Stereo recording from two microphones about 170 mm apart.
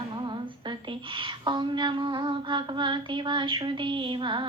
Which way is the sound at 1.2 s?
30° right (ahead or behind).